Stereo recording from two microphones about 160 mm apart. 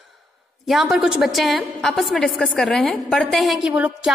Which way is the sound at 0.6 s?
Centre (ahead or behind).